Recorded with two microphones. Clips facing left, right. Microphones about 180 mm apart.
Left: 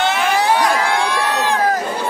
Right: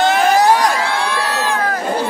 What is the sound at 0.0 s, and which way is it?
Crowd, 40° right (ahead or behind).